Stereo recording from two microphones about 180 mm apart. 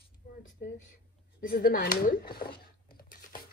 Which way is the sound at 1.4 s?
50° left (ahead or behind).